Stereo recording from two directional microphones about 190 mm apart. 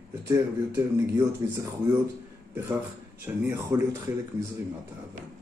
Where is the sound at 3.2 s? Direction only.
10° right (ahead or behind).